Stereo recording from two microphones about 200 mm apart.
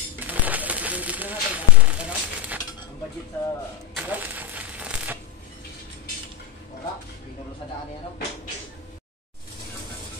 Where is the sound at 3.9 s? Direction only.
10° right (ahead or behind).